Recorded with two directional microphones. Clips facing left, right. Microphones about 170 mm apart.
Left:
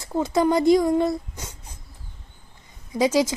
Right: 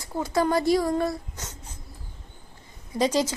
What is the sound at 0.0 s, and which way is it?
A woman's voice, 20° left (ahead or behind).